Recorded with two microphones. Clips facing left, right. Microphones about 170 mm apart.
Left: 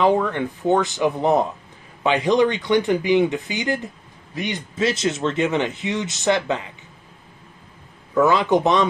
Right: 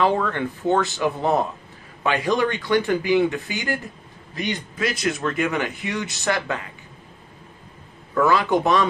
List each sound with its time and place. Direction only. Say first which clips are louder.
0.0 s speech: left 2 dB; 15° left (ahead or behind)
8.1 s speech: left 2 dB; 20° left (ahead or behind)